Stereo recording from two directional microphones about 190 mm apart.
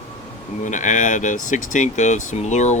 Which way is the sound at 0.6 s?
40° left (ahead or behind).